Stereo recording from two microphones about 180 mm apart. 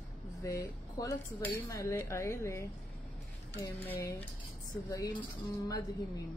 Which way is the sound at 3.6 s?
15° left (ahead or behind).